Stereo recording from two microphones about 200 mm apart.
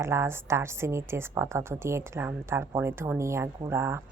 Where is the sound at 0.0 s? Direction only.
15° right (ahead or behind).